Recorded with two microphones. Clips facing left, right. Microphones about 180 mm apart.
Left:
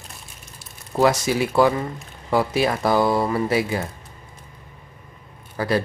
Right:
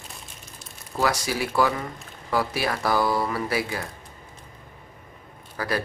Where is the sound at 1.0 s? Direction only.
20° left (ahead or behind).